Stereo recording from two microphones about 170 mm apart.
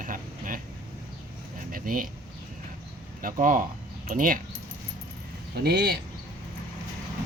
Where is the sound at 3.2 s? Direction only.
50° right (ahead or behind).